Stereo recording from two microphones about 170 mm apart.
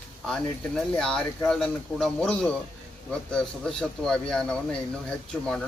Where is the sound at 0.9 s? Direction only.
5° left (ahead or behind).